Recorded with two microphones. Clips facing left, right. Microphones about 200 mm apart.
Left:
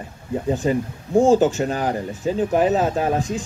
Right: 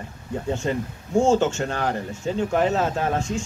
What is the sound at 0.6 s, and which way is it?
Speech, 15° left (ahead or behind).